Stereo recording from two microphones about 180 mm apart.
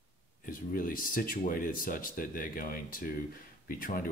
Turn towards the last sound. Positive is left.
turn(degrees=50)  # may be behind; listen again after turning